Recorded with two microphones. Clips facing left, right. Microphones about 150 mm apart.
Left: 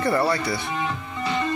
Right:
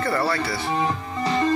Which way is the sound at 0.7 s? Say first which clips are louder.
Right 4 dB; 35° right (ahead or behind).